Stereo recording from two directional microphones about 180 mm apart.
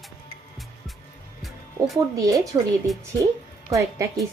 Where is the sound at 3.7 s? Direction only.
15° right (ahead or behind).